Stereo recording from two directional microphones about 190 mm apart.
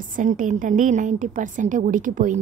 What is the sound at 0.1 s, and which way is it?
A woman's voice, 45° right (ahead or behind).